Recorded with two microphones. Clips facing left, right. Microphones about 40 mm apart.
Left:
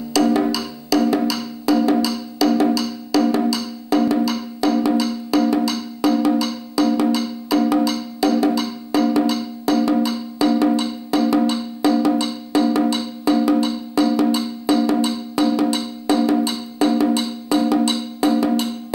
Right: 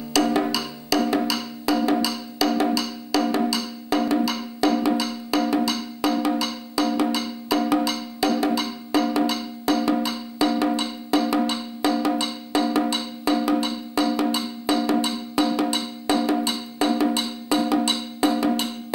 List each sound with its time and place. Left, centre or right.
0.1 s wood block: right
4.1 s music: right